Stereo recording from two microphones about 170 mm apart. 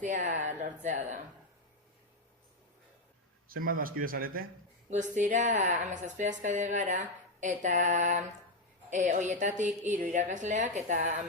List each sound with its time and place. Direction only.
0.0 s a woman's voice: 45° right (ahead or behind)
3.5 s a man's voice: 55° right (ahead or behind)
5.1 s a woman's voice: 45° right (ahead or behind)